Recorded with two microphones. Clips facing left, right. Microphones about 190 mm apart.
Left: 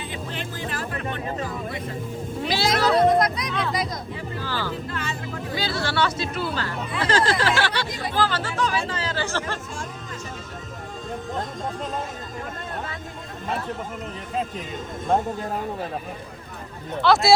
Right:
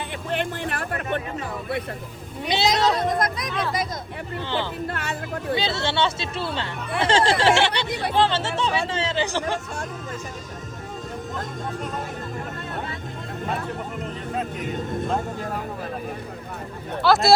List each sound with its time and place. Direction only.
0.0 s music: 60° right (ahead or behind)
2.5 s cat: 20° right (ahead or behind)
3.4 s music: centre (ahead or behind)
4.4 s music: 25° right (ahead or behind)
4.9 s music: 65° right (ahead or behind)
5.5 s speech: 25° right (ahead or behind)
7.9 s chatter: 65° right (ahead or behind)
8.1 s music: 25° right (ahead or behind)
8.9 s chatter: 25° right (ahead or behind)
17.0 s speech: centre (ahead or behind)